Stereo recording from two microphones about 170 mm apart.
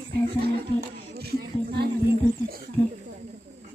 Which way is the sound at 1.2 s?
70° right (ahead or behind).